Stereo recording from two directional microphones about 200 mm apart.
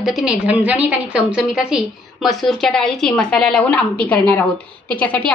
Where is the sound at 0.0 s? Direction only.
Centre (ahead or behind).